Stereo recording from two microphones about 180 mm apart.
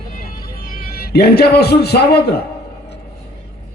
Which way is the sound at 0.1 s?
50° left (ahead or behind).